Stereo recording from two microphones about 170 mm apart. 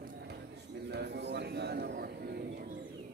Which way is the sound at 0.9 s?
80° right.